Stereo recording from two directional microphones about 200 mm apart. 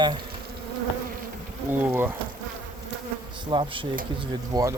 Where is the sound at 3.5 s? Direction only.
25° right (ahead or behind).